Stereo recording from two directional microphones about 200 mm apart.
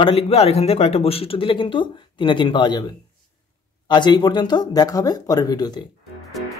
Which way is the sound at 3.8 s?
20° left (ahead or behind).